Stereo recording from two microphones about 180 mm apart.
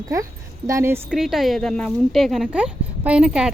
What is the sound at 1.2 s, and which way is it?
Speech, centre (ahead or behind).